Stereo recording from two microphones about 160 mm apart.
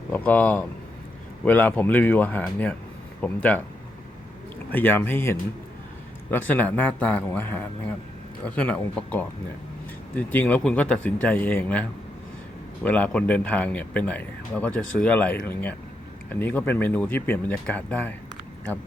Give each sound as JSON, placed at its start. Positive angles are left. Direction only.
{"t": 0.1, "sound": "speech", "side_deg": 10}
{"t": 4.7, "sound": "speech", "side_deg": 10}